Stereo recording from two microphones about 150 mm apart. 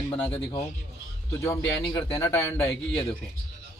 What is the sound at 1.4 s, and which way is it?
Speech, 20° left (ahead or behind).